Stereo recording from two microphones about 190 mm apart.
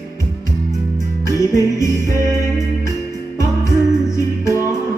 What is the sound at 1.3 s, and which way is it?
Music, 15° left (ahead or behind).